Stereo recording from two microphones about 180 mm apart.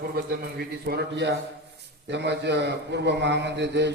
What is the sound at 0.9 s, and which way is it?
A man's voice, 70° right (ahead or behind).